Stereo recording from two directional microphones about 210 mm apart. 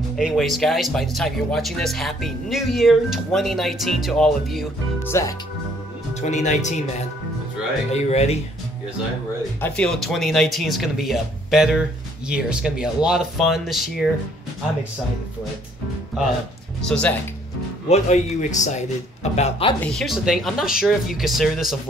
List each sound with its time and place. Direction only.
0.1 s speech: centre (ahead or behind)
5.0 s speech: 10° left (ahead or behind)
6.2 s a man's voice: 35° left (ahead or behind)
7.9 s a man's voice: 30° left (ahead or behind)
9.6 s speech: 5° left (ahead or behind)
16.8 s speech: 5° left (ahead or behind)
17.8 s a man's voice: 30° left (ahead or behind)
19.8 s speech: centre (ahead or behind)